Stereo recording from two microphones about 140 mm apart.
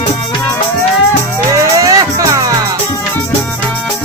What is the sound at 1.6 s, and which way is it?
Music, 25° right (ahead or behind).